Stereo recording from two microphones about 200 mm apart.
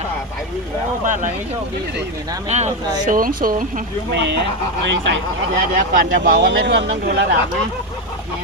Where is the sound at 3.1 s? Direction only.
45° right (ahead or behind).